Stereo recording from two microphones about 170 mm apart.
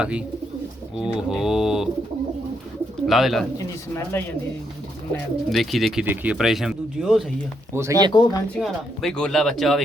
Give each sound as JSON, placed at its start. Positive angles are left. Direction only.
{"t": 0.0, "sound": "speech", "side_deg": -5}
{"t": 3.1, "sound": "speech", "side_deg": 0}
{"t": 5.5, "sound": "speech", "side_deg": 0}
{"t": 7.7, "sound": "speech", "side_deg": -15}
{"t": 8.1, "sound": "speech", "side_deg": 25}
{"t": 8.5, "sound": "speech", "side_deg": 0}